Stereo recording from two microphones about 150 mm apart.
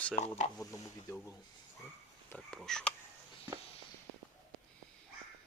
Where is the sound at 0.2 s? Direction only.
50° left (ahead or behind).